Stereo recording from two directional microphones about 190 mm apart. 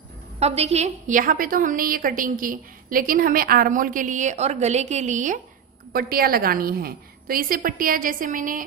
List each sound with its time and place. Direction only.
0.4 s a woman's voice: 35° right (ahead or behind)
5.9 s a woman's voice: 50° right (ahead or behind)